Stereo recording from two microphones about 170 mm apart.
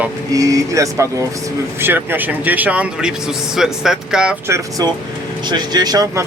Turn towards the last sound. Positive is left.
turn(degrees=-20)  # may be behind; listen again after turning